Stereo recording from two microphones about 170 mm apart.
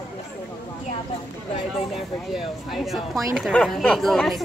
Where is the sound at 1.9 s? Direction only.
Centre (ahead or behind).